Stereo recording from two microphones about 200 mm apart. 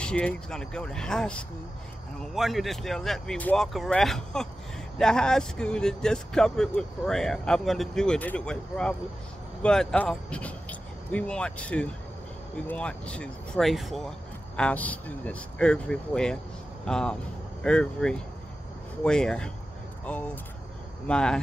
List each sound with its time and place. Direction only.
0.0 s speech: 5° left (ahead or behind)